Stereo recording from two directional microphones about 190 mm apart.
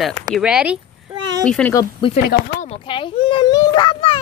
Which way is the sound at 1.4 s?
5° left (ahead or behind).